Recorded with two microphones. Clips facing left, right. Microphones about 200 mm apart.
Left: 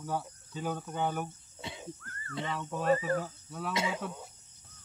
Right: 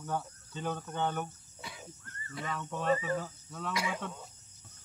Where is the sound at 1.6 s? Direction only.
25° left (ahead or behind).